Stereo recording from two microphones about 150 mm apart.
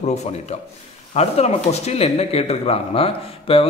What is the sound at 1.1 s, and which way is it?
Speech, 45° left (ahead or behind).